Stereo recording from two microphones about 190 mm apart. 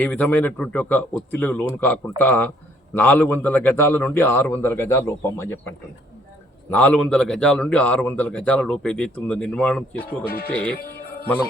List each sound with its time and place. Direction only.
0.0 s a man's voice: 10° left (ahead or behind)
10.2 s speech: 55° left (ahead or behind)
10.5 s a man's voice: 5° left (ahead or behind)